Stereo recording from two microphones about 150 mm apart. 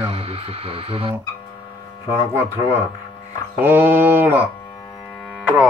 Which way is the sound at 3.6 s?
15° right (ahead or behind).